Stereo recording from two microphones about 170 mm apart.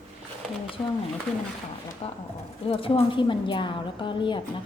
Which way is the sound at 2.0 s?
35° left (ahead or behind).